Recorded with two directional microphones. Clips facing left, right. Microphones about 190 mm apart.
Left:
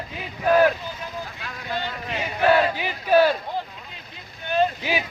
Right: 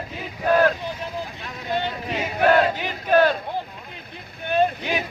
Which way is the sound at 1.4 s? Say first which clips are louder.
Right 4 dB; 20° right (ahead or behind).